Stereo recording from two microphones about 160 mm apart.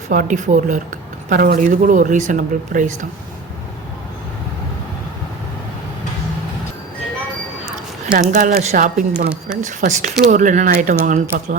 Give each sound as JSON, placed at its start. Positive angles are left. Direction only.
{"t": 0.1, "sound": "speech", "side_deg": -55}
{"t": 1.3, "sound": "speech", "side_deg": -65}
{"t": 8.1, "sound": "speech", "side_deg": -65}